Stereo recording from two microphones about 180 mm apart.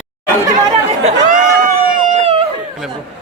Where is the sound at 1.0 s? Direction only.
45° right (ahead or behind).